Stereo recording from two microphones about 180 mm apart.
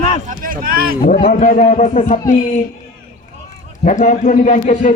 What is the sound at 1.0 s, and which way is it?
A man's voice, 55° left (ahead or behind).